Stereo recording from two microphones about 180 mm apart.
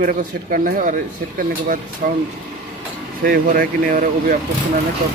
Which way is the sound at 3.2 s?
55° right (ahead or behind).